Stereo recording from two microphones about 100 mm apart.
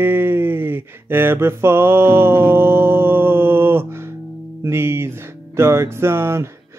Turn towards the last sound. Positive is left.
turn(degrees=-25)  # may be behind; listen again after turning